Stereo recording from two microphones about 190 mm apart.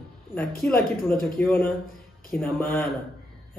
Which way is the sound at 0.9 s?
50° left (ahead or behind).